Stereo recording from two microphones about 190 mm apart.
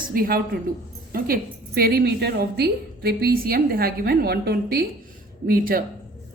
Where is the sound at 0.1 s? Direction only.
50° right (ahead or behind).